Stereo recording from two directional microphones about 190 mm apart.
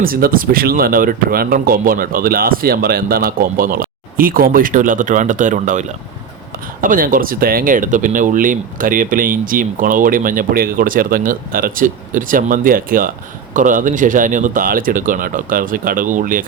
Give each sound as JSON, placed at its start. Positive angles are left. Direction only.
{"t": 0.0, "sound": "speech", "side_deg": -50}
{"t": 6.8, "sound": "speech", "side_deg": -45}